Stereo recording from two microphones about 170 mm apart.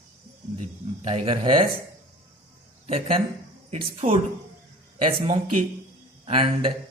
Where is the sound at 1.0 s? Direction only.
40° right (ahead or behind).